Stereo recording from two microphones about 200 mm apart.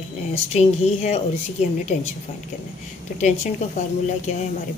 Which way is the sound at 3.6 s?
35° left (ahead or behind).